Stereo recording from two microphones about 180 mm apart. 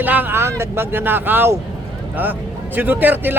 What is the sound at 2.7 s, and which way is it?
Speech, 10° right (ahead or behind).